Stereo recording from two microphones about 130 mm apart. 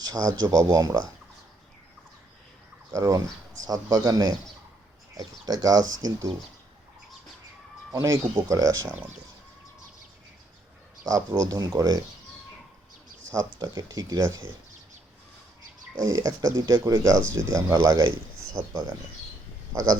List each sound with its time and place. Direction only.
0.1 s speech: 30° right (ahead or behind)
2.9 s speech: 25° right (ahead or behind)
7.9 s speech: 25° right (ahead or behind)
8.9 s speech: 10° right (ahead or behind)
11.0 s speech: 30° right (ahead or behind)
13.3 s speech: 25° right (ahead or behind)
16.0 s speech: 25° right (ahead or behind)